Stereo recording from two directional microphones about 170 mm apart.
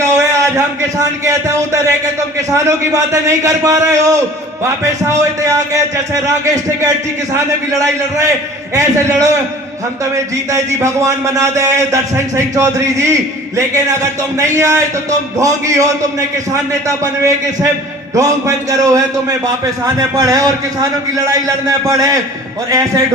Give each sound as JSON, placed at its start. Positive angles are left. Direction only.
{"t": 0.0, "sound": "a man's voice", "side_deg": -20}
{"t": 8.7, "sound": "a man's voice", "side_deg": -15}
{"t": 10.5, "sound": "a man's voice", "side_deg": -20}